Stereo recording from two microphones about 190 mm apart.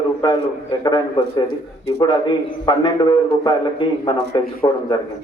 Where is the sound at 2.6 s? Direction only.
25° left (ahead or behind).